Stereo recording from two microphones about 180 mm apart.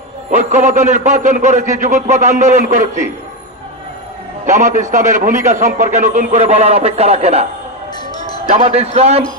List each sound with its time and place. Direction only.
0.3 s a man's voice: 45° right (ahead or behind)
4.4 s a man's voice: 45° right (ahead or behind)
8.4 s a man's voice: 35° right (ahead or behind)